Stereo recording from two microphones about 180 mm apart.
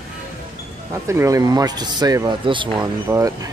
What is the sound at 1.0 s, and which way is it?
Speech, 15° right (ahead or behind).